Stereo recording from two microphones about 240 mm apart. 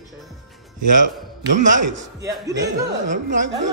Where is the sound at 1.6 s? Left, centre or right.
Right.